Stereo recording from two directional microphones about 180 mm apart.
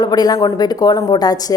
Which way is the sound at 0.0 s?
20° left (ahead or behind).